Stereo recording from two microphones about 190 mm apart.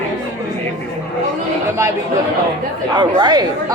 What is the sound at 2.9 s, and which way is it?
Speech, 25° right (ahead or behind).